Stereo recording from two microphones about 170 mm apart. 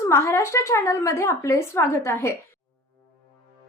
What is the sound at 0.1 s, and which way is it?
Speech, 15° left (ahead or behind).